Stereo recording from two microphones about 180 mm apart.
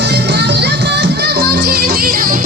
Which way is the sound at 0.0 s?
70° right (ahead or behind).